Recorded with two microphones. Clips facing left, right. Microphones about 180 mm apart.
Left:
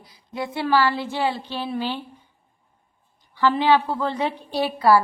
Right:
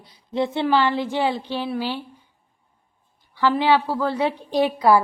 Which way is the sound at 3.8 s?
5° right (ahead or behind).